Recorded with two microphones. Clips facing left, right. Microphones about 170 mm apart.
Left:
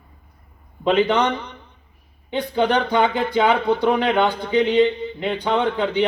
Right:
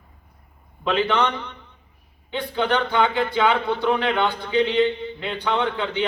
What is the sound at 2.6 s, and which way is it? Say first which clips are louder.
Speech: left 1 dB; 40° left (ahead or behind).